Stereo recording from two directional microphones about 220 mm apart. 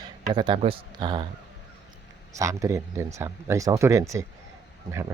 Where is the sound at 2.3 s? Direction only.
15° right (ahead or behind).